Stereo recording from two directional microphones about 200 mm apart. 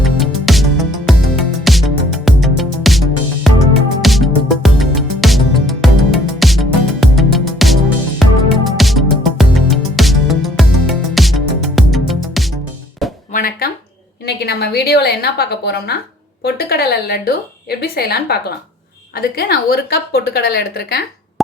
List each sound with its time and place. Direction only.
0.0 s music: centre (ahead or behind)
13.3 s a sound: 45° left (ahead or behind)
14.3 s a woman's voice: 55° left (ahead or behind)